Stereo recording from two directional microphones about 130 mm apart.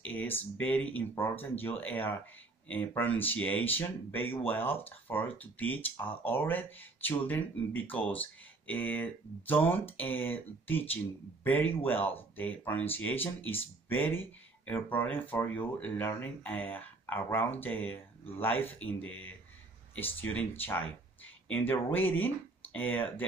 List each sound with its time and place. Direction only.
0.0 s speech: 15° left (ahead or behind)